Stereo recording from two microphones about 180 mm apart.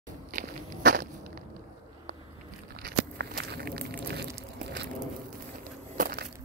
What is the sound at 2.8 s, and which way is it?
Walk, 65° right (ahead or behind).